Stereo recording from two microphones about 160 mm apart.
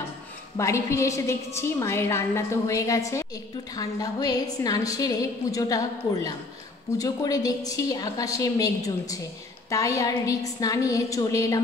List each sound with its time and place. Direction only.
0.6 s a woman's voice: 20° left (ahead or behind)